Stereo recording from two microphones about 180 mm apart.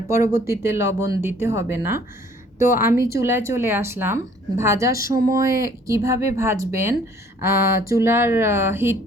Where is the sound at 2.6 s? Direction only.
50° left (ahead or behind).